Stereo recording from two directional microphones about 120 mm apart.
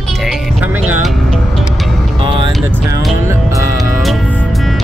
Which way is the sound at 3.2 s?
25° right (ahead or behind).